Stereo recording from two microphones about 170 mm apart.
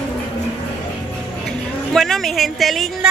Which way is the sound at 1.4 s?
Centre (ahead or behind).